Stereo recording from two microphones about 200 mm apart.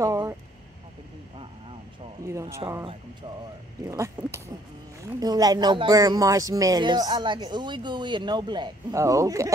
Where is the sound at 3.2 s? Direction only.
25° right (ahead or behind).